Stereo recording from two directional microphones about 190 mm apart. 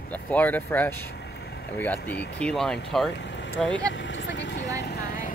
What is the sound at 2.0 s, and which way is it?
Speech, 60° left (ahead or behind).